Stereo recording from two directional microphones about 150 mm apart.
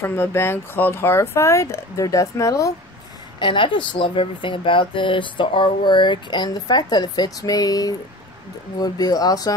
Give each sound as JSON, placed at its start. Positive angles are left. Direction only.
{"t": 0.0, "sound": "speech", "side_deg": 15}
{"t": 3.3, "sound": "speech", "side_deg": 35}